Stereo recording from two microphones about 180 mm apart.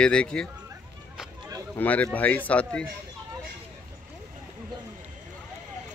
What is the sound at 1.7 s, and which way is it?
Speech, 10° left (ahead or behind).